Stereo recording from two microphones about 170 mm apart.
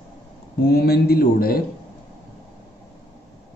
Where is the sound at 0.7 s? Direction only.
65° left (ahead or behind).